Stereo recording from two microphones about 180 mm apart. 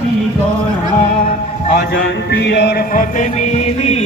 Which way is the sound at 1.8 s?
60° left (ahead or behind).